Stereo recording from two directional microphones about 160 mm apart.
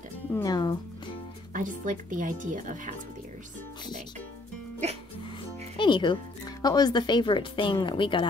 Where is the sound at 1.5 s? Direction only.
55° right (ahead or behind).